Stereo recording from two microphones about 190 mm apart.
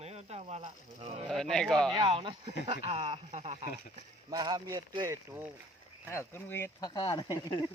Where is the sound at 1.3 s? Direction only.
Centre (ahead or behind).